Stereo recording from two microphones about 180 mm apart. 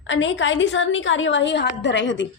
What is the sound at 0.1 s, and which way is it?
A woman's voice, 90° left.